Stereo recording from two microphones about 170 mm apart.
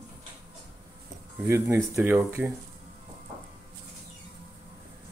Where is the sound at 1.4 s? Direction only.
15° right (ahead or behind).